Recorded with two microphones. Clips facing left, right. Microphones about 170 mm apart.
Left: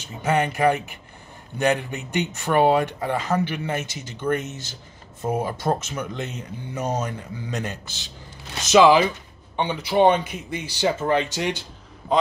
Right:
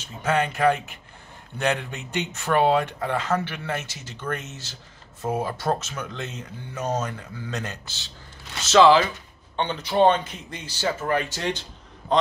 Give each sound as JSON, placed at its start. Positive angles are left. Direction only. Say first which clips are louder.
{"t": 0.2, "sound": "speech", "louder": "left 1 dB", "side_deg": 15}